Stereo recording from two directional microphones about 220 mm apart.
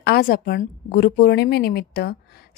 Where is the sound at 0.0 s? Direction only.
45° left (ahead or behind).